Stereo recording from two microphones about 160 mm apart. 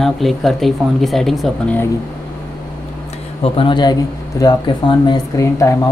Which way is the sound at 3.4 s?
30° left (ahead or behind).